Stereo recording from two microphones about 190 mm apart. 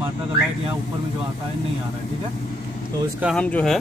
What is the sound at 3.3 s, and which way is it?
Speech, 5° left (ahead or behind).